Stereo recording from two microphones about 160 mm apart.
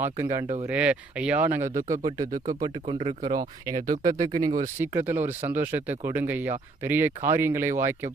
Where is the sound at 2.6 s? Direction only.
35° right (ahead or behind).